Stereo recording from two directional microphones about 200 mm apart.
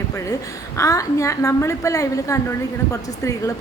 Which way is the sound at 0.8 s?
15° left (ahead or behind).